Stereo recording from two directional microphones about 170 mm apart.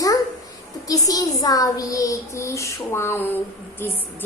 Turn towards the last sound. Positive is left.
turn(degrees=15)  # may be behind; listen again after turning